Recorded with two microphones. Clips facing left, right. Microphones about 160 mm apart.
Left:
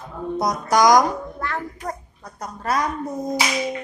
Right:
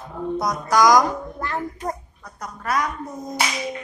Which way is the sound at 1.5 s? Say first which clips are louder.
Right 5 dB; 20° right (ahead or behind).